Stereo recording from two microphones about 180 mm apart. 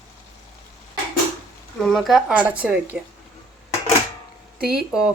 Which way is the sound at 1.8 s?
Centre (ahead or behind).